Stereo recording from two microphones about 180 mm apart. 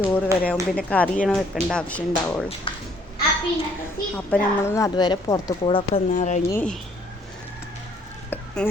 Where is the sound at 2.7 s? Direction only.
30° left (ahead or behind).